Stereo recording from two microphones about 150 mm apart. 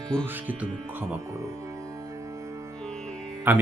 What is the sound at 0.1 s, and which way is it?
Speech, 15° right (ahead or behind).